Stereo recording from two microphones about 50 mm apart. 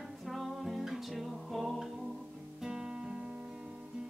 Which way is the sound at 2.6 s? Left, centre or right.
Centre.